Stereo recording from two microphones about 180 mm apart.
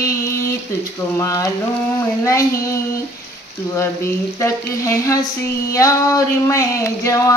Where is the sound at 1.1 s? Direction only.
15° left (ahead or behind).